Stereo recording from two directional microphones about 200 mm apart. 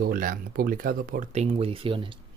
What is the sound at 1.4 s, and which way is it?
Speech, 30° right (ahead or behind).